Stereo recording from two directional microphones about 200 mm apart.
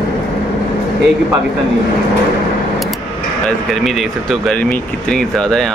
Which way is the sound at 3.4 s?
Centre (ahead or behind).